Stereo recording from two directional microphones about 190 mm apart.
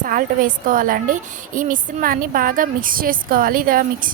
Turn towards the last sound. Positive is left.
turn(degrees=-45)  # may be behind; listen again after turning